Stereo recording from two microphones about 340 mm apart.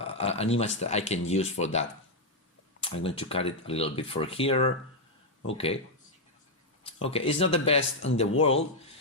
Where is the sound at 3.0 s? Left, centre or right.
Centre.